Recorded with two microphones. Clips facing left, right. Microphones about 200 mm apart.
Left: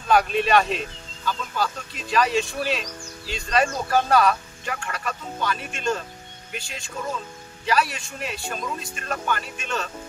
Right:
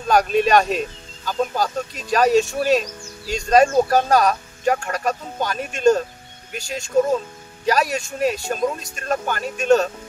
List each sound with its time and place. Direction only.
0.1 s speech: 45° right (ahead or behind)